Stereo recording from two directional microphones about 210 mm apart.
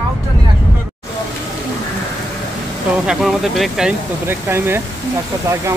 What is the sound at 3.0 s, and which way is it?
Speech, centre (ahead or behind).